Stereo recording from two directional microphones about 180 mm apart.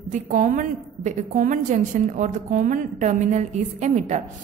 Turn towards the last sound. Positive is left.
turn(degrees=-40)  # may be behind; listen again after turning